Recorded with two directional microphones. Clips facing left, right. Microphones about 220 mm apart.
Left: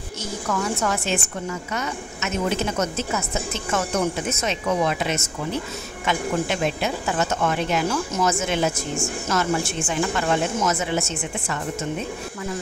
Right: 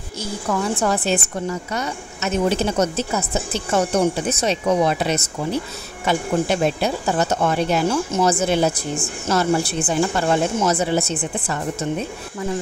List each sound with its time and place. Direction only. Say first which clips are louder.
0.2 s speech: right 3 dB; 30° right (ahead or behind)